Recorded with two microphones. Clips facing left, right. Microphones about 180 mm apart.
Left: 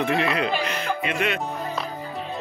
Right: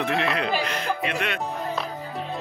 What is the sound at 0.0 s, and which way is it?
Speech, centre (ahead or behind).